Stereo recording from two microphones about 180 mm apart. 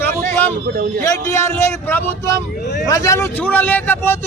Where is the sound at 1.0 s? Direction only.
15° left (ahead or behind).